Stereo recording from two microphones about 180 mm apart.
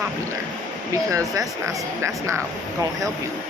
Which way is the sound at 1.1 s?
15° right (ahead or behind).